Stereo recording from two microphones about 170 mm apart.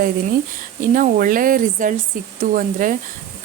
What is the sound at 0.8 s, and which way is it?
Speech, 50° right (ahead or behind).